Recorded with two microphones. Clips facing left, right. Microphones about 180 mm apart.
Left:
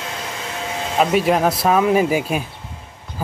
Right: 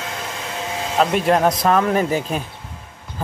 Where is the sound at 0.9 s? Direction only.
5° left (ahead or behind).